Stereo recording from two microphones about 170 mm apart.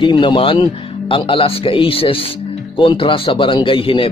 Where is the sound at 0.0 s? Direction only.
30° left (ahead or behind).